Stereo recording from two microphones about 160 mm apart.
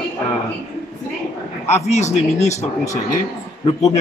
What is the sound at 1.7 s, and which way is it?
Speech, 45° left (ahead or behind).